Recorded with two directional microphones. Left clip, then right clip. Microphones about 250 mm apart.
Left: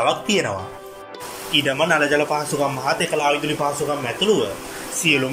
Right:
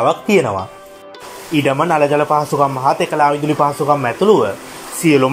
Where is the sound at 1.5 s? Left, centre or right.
Right.